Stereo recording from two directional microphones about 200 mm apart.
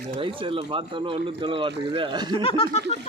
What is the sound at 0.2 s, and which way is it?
Speech, 25° right (ahead or behind).